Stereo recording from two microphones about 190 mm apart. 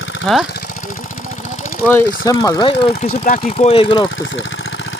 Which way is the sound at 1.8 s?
15° left (ahead or behind).